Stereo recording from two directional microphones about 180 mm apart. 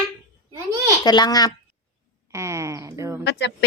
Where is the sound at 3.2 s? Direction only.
75° left (ahead or behind).